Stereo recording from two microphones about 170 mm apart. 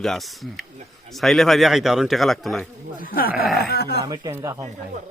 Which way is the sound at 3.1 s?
60° left (ahead or behind).